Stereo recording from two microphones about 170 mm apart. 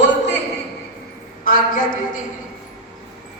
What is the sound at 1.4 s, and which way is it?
Speech, 55° left (ahead or behind).